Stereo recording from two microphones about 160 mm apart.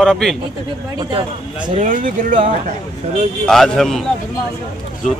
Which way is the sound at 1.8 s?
55° right (ahead or behind).